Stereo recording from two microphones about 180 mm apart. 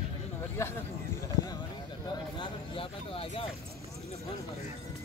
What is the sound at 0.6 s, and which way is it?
Speech, 15° left (ahead or behind).